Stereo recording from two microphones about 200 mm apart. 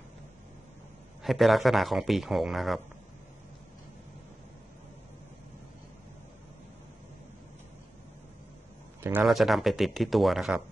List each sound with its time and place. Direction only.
1.2 s speech: centre (ahead or behind)
9.0 s speech: 5° right (ahead or behind)